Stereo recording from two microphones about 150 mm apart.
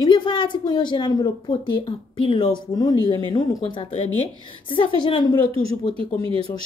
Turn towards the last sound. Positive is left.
turn(degrees=-35)  # may be behind; listen again after turning